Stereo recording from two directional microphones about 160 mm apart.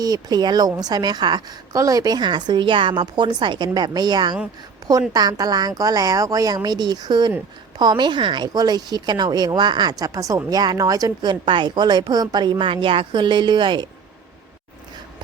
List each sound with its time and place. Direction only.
0.0 s speech: 25° right (ahead or behind)